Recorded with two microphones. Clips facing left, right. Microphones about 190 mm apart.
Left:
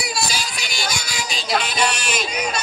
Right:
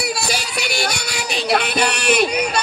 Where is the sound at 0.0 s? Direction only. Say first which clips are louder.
Right 3 dB; 65° right (ahead or behind).